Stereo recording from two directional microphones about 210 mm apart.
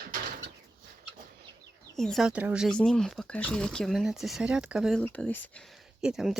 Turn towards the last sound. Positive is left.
turn(degrees=0)  # may be behind; listen again after turning